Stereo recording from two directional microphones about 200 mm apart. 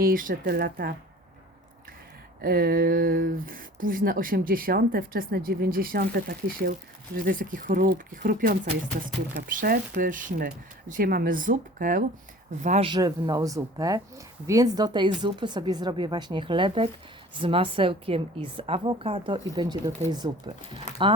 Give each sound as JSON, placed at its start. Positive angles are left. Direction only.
{"t": 0.0, "sound": "speech", "side_deg": -45}
{"t": 2.4, "sound": "speech", "side_deg": -50}
{"t": 12.9, "sound": "a woman's voice", "side_deg": -20}